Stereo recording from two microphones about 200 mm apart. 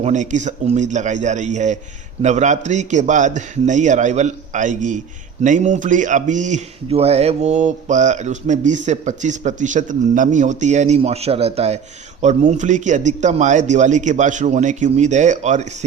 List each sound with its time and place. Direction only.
0.0 s speech: 35° right (ahead or behind)